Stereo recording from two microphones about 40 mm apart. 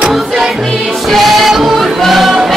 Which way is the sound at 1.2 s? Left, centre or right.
Centre.